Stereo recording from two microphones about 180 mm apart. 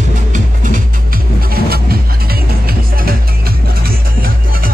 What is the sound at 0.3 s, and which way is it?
Music, 45° right (ahead or behind).